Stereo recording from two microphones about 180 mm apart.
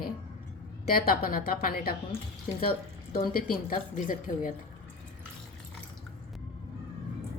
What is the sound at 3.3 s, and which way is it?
A woman's voice, 55° left (ahead or behind).